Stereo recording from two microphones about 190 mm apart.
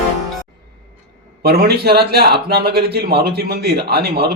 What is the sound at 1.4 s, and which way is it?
A man's voice, 55° right (ahead or behind).